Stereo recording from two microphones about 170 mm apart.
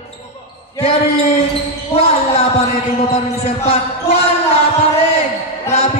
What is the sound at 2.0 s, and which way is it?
Basketball bounce, 35° left (ahead or behind).